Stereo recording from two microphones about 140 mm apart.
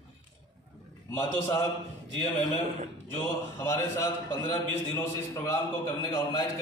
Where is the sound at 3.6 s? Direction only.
20° left (ahead or behind).